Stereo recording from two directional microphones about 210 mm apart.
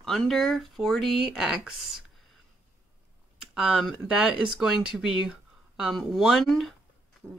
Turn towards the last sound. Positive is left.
turn(degrees=0)  # may be behind; listen again after turning